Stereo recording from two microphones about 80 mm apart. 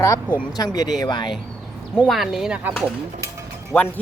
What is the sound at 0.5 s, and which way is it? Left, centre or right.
Speech, left.